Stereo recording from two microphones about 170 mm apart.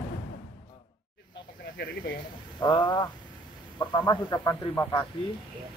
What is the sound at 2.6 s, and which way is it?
Speech, 25° left (ahead or behind).